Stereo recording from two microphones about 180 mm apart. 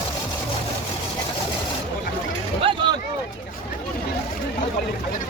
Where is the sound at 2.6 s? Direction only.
30° right (ahead or behind).